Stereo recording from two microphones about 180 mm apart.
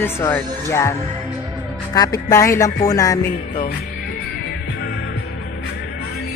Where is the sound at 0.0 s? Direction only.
15° left (ahead or behind).